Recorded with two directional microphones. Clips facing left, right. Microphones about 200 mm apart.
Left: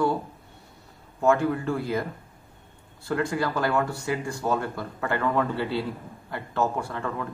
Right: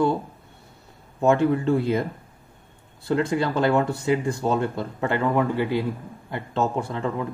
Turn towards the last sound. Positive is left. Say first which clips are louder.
# right 4 dB
turn(degrees=-20)  # may be behind; listen again after turning